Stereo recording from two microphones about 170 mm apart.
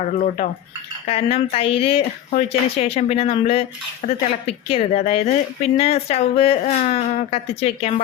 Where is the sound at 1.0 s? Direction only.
35° left (ahead or behind).